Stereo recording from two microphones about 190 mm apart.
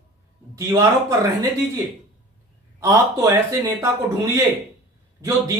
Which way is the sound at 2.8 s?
15° right (ahead or behind).